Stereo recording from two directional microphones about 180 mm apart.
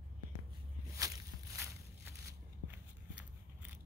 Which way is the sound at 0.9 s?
15° right (ahead or behind).